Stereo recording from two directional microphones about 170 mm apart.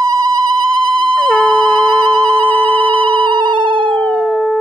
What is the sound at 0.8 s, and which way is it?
Sine wave, 30° right (ahead or behind).